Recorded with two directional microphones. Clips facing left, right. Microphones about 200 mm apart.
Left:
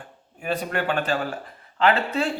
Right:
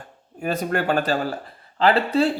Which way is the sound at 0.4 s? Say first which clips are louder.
Right 3 dB; 40° right (ahead or behind).